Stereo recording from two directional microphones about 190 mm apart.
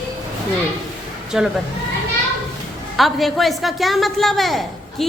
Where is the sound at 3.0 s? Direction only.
Centre (ahead or behind).